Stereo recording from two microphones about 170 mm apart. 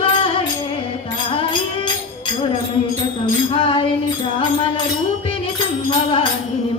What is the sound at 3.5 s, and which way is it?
Music, 30° left (ahead or behind).